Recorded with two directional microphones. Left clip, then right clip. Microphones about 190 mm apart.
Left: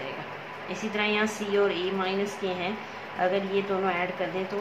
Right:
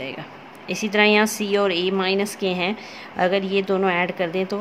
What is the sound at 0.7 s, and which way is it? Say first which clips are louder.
A woman's voice: right 10 dB; 65° right (ahead or behind).